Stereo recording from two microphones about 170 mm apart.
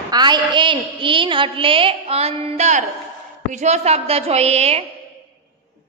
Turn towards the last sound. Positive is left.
turn(degrees=-40)  # may be behind; listen again after turning